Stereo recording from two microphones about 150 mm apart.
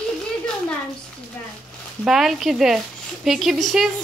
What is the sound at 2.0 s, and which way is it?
A woman's voice, centre (ahead or behind).